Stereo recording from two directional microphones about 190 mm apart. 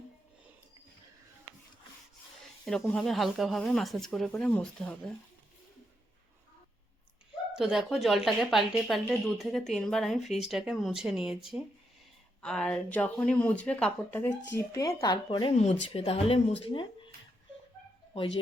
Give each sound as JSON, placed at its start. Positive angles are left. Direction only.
{"t": 2.6, "sound": "speech", "side_deg": 5}
{"t": 7.5, "sound": "speech", "side_deg": -5}
{"t": 12.4, "sound": "speech", "side_deg": 5}